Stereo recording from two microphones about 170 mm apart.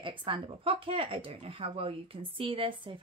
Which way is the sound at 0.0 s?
30° right (ahead or behind).